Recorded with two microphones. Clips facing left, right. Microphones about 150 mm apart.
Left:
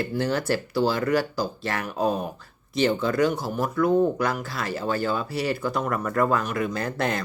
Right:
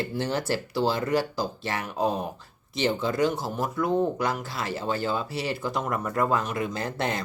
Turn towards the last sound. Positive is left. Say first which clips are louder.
# left 2 dB
turn(degrees=-25)  # may be behind; listen again after turning